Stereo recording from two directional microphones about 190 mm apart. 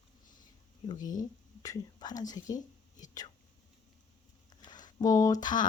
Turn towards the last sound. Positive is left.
turn(degrees=20)  # may be behind; listen again after turning